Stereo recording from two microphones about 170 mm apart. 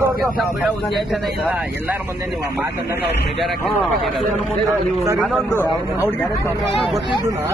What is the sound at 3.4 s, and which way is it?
Speech, centre (ahead or behind).